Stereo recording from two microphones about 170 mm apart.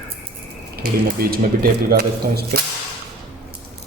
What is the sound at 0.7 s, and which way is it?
Speech, 60° right (ahead or behind).